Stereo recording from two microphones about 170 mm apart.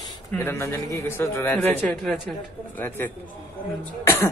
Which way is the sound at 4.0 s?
15° left (ahead or behind).